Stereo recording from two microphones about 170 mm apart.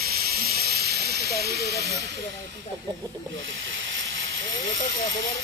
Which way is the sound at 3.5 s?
90° right.